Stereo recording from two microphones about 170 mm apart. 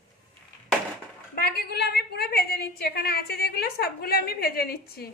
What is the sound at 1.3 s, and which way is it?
A woman's voice, 65° left (ahead or behind).